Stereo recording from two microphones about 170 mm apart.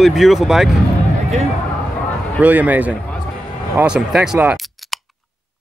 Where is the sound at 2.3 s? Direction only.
10° right (ahead or behind).